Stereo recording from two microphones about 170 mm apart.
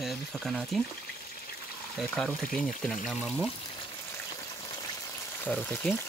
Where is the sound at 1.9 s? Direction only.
5° left (ahead or behind).